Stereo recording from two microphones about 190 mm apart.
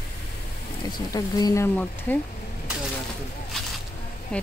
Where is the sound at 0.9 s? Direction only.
20° left (ahead or behind).